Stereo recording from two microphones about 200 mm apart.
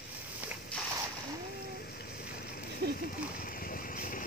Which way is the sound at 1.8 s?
50° left (ahead or behind).